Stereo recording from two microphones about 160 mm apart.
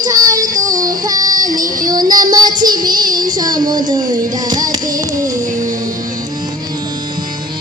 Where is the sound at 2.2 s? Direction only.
25° right (ahead or behind).